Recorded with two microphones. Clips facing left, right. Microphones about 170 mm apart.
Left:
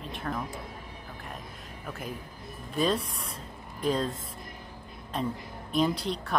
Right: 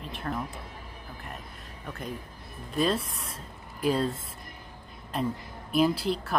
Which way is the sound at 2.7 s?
Centre (ahead or behind).